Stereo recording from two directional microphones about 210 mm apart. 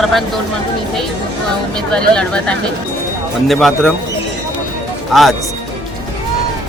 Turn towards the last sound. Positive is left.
turn(degrees=0)  # may be behind; listen again after turning